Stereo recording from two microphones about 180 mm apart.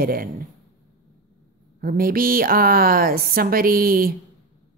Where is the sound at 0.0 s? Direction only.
55° right (ahead or behind).